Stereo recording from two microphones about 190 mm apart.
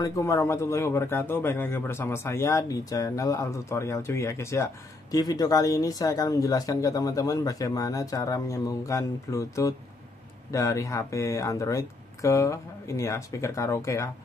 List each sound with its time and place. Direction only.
0.0 s speech: 15° left (ahead or behind)